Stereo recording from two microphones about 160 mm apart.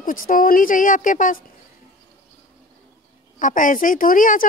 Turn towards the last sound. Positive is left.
turn(degrees=55)  # may be behind; listen again after turning